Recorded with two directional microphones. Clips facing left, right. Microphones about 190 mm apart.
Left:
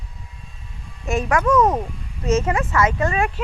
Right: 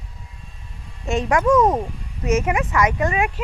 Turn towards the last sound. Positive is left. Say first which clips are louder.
# even
turn(degrees=-15)  # may be behind; listen again after turning